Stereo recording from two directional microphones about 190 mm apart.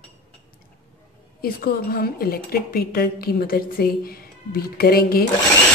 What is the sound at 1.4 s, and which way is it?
A woman's voice, 55° left (ahead or behind).